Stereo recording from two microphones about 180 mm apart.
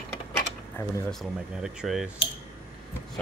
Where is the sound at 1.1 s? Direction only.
Centre (ahead or behind).